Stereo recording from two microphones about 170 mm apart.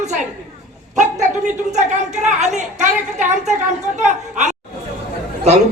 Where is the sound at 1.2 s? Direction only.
45° right (ahead or behind).